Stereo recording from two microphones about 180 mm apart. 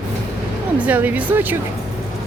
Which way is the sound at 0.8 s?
10° right (ahead or behind).